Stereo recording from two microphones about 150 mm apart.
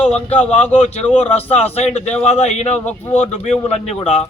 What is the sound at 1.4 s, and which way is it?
A man's voice, 45° left (ahead or behind).